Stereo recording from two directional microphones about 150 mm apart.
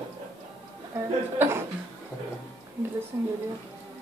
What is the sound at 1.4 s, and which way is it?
Speech, 15° right (ahead or behind).